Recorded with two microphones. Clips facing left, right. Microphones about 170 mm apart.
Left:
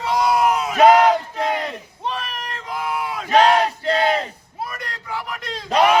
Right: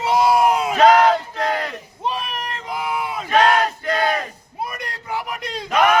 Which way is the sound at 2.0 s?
10° right (ahead or behind).